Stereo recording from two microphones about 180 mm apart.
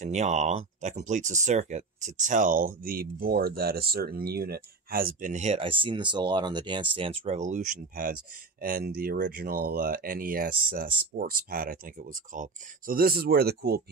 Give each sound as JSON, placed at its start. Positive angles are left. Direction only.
{"t": 0.0, "sound": "speech", "side_deg": -40}